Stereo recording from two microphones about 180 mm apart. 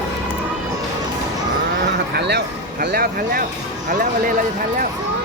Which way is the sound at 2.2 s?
65° right (ahead or behind).